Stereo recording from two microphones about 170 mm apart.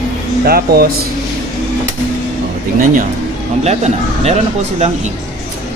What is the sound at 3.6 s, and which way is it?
Speech, 40° right (ahead or behind).